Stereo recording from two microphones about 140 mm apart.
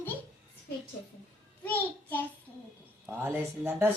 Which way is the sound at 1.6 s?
10° left (ahead or behind).